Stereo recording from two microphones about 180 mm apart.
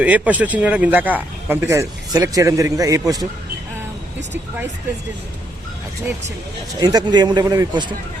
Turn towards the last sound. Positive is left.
turn(degrees=-25)  # may be behind; listen again after turning